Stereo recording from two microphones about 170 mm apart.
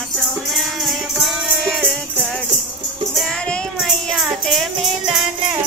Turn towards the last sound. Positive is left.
turn(degrees=0)  # may be behind; listen again after turning